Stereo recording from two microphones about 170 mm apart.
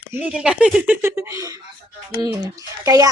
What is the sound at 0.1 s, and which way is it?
A child's voice, 5° right (ahead or behind).